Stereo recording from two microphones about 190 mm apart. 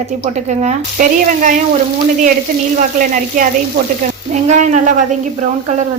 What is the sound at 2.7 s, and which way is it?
A woman's voice, 45° right (ahead or behind).